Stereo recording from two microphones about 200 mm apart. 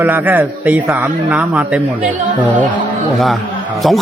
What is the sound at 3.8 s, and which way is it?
Speech, centre (ahead or behind).